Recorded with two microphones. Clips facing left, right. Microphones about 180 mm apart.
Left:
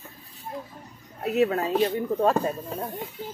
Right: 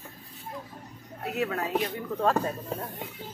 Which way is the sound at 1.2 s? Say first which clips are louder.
Left 7 dB; 25° left (ahead or behind).